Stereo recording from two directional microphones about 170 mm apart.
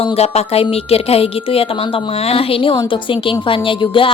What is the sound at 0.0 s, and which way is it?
A woman's voice, 35° left (ahead or behind).